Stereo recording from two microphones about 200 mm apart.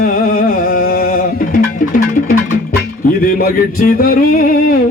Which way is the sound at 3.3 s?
45° left (ahead or behind).